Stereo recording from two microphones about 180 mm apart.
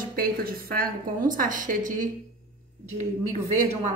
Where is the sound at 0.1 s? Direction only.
55° right (ahead or behind).